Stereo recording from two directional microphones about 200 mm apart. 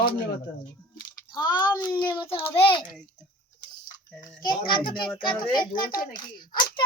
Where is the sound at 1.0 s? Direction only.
20° left (ahead or behind).